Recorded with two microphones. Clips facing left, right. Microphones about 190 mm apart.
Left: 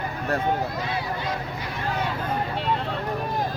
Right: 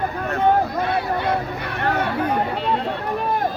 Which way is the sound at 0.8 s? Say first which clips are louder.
Right 7 dB; 60° right (ahead or behind).